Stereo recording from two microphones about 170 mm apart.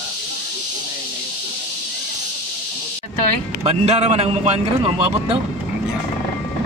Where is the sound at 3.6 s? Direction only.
35° right (ahead or behind).